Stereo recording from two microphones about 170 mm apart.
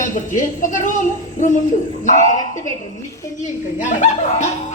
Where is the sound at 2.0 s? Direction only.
50° left (ahead or behind).